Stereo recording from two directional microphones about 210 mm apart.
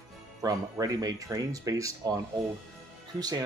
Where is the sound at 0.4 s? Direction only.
15° right (ahead or behind).